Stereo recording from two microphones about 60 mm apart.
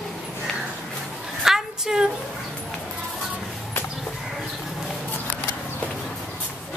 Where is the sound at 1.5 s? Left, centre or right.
Centre.